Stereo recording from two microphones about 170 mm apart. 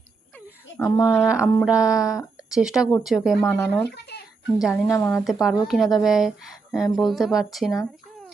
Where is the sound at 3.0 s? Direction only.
Centre (ahead or behind).